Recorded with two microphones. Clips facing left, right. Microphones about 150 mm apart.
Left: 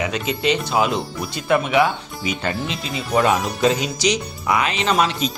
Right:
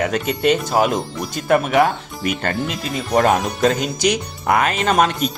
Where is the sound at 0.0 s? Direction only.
50° right (ahead or behind).